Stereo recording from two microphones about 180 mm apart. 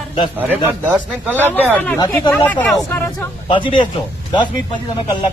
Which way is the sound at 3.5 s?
25° left (ahead or behind).